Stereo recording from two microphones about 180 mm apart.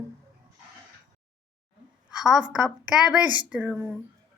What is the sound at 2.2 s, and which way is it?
A woman's voice, 5° right (ahead or behind).